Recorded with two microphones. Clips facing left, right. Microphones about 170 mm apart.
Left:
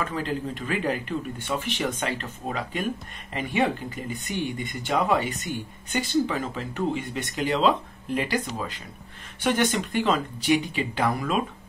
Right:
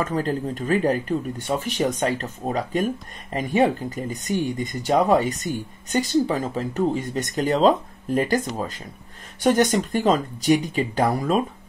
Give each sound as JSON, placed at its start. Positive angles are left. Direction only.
{"t": 0.0, "sound": "speech", "side_deg": -40}